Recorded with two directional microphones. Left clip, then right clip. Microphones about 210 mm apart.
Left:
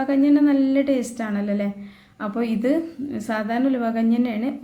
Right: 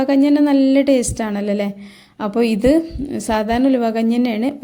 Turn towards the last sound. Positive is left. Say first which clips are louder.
# right 4 dB
turn(degrees=-35)  # may be behind; listen again after turning